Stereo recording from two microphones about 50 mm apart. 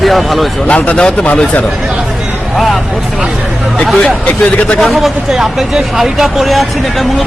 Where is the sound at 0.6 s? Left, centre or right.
Left.